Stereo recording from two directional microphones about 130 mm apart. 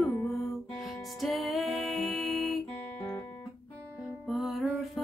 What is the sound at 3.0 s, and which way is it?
Guitar, 25° left (ahead or behind).